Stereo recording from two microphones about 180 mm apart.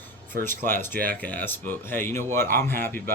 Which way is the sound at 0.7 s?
10° left (ahead or behind).